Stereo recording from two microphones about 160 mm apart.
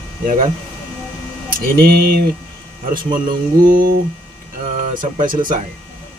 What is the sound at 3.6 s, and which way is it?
Speech, 65° right (ahead or behind).